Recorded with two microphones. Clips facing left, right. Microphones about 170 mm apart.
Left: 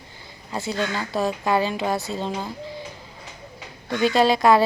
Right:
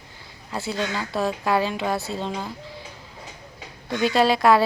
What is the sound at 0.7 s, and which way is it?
Speech, centre (ahead or behind).